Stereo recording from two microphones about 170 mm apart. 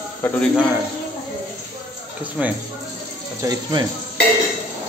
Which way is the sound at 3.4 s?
25° right (ahead or behind).